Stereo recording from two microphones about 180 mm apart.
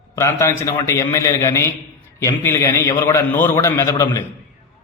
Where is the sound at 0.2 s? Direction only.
15° left (ahead or behind).